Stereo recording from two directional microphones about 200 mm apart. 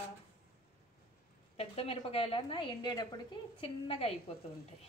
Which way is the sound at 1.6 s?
30° left (ahead or behind).